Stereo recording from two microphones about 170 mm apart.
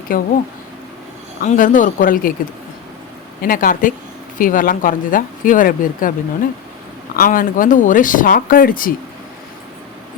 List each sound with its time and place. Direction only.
0.1 s speech: 55° left (ahead or behind)
1.5 s speech: 50° left (ahead or behind)
3.4 s speech: 55° left (ahead or behind)
7.2 s speech: 55° left (ahead or behind)